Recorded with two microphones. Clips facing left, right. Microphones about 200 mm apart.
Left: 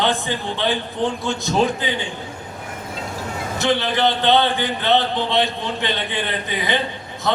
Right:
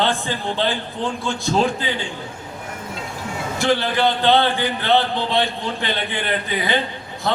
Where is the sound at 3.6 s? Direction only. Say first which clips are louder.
Even; 20° left (ahead or behind).